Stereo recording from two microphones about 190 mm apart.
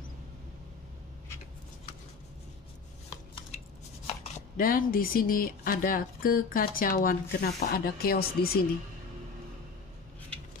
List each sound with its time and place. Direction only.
4.6 s speech: 50° left (ahead or behind)